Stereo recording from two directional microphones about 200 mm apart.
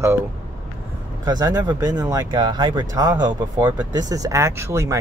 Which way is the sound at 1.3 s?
20° right (ahead or behind).